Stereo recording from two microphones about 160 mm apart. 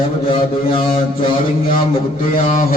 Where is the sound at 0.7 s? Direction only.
35° left (ahead or behind).